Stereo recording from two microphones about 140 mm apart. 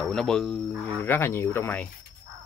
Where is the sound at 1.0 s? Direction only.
15° left (ahead or behind).